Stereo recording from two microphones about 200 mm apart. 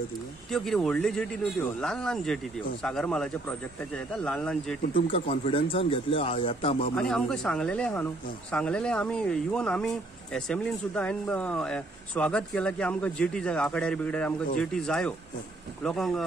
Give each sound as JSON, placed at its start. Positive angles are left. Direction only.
{"t": 0.5, "sound": "speech", "side_deg": 0}
{"t": 4.9, "sound": "speech", "side_deg": 25}
{"t": 7.0, "sound": "speech", "side_deg": 5}